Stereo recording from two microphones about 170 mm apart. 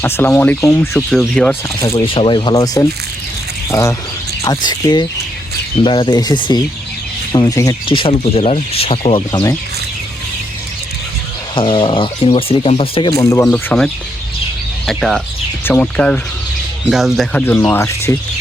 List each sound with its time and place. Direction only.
0.0 s speech: 10° left (ahead or behind)
2.0 s speech: 30° left (ahead or behind)
7.9 s speech: 30° left (ahead or behind)
9.3 s speech: 20° left (ahead or behind)
11.5 s speech: 30° left (ahead or behind)
13.1 s speech: 20° left (ahead or behind); by 17.4 s centre (ahead or behind)
17.7 s speech: 15° left (ahead or behind)